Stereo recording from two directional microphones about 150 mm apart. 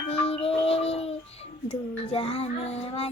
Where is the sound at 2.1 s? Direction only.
40° left (ahead or behind).